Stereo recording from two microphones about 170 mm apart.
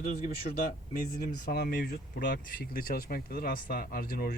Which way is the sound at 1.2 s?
60° left (ahead or behind).